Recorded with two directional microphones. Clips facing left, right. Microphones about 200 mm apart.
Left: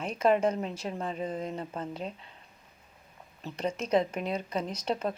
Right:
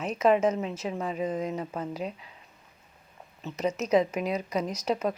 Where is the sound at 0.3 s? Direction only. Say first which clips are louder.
Right 2 dB; 5° right (ahead or behind).